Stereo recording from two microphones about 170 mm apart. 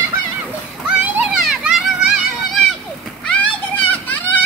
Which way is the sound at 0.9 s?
10° right (ahead or behind).